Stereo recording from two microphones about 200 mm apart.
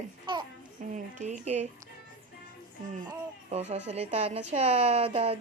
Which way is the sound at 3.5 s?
30° right (ahead or behind).